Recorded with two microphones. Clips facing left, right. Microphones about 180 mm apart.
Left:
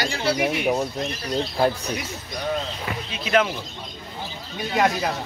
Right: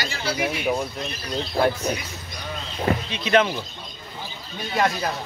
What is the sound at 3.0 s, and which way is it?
Speech, 5° left (ahead or behind).